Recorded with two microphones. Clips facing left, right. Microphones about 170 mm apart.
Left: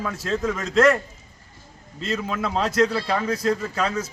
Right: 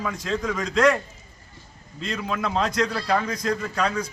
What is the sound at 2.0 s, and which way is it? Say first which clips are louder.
A man's voice: left 2 dB; 5° left (ahead or behind).